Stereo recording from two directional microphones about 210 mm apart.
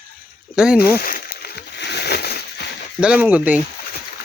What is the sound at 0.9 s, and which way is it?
Speech, 45° left (ahead or behind).